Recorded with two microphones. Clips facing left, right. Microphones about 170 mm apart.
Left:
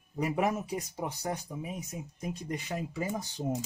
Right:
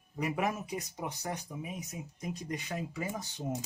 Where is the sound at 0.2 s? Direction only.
30° left (ahead or behind).